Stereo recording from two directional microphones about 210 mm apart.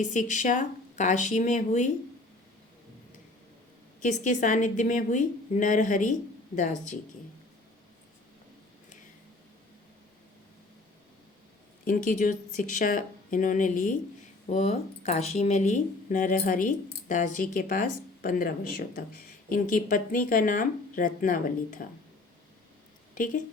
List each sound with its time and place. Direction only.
0.0 s speech: 35° left (ahead or behind)
4.0 s speech: 35° left (ahead or behind)
11.9 s speech: 40° left (ahead or behind)
23.1 s speech: 40° left (ahead or behind)